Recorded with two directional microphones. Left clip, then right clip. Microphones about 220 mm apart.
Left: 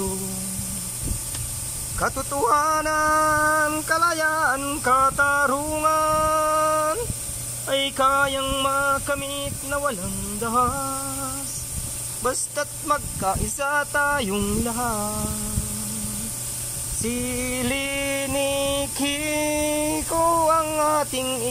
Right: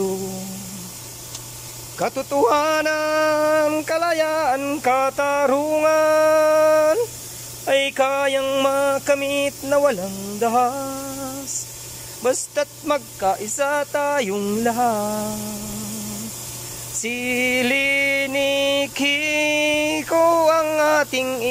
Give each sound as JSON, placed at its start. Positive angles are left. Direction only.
{"t": 2.0, "sound": "speech", "side_deg": -15}
{"t": 2.5, "sound": "male singing", "side_deg": -5}
{"t": 4.6, "sound": "a sound", "side_deg": 0}
{"t": 7.7, "sound": "male singing", "side_deg": 0}
{"t": 10.5, "sound": "male singing", "side_deg": -5}
{"t": 12.2, "sound": "speech", "side_deg": -20}
{"t": 12.5, "sound": "male singing", "side_deg": -5}
{"t": 14.7, "sound": "speech", "side_deg": -10}
{"t": 17.0, "sound": "music", "side_deg": 0}